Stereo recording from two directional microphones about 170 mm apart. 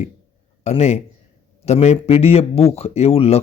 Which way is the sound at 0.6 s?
40° left (ahead or behind).